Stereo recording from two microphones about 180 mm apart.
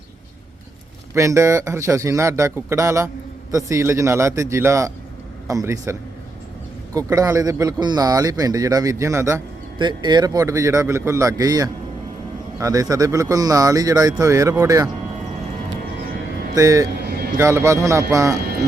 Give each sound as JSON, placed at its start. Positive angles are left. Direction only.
{"t": 1.1, "sound": "a man's voice", "side_deg": -15}
{"t": 16.6, "sound": "speech", "side_deg": -20}
{"t": 17.0, "sound": "a sound", "side_deg": -60}
{"t": 17.3, "sound": "a man's voice", "side_deg": -15}